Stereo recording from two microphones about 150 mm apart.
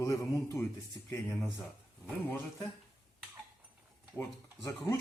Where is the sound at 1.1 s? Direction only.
10° left (ahead or behind).